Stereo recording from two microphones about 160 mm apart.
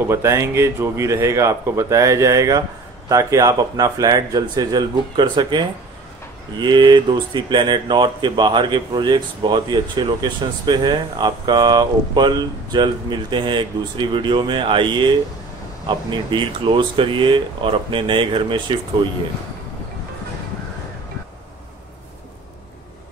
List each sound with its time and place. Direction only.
0.1 s speech: 15° right (ahead or behind); by 19.1 s 30° right (ahead or behind)